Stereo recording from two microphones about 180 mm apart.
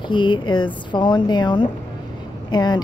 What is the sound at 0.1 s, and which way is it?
Speech, 25° left (ahead or behind).